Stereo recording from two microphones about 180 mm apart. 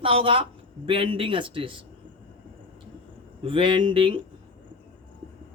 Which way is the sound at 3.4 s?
30° right (ahead or behind).